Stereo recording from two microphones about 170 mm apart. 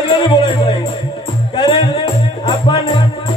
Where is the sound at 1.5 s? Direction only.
30° left (ahead or behind).